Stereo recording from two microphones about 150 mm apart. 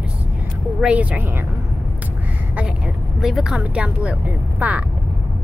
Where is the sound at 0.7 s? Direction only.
10° right (ahead or behind).